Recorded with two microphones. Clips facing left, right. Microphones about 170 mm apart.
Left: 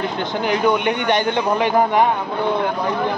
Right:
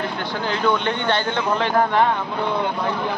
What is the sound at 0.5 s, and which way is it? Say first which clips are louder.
Speech: left 3 dB; 15° left (ahead or behind).